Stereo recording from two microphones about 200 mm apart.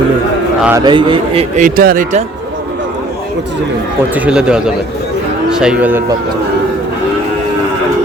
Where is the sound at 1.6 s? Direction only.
45° right (ahead or behind).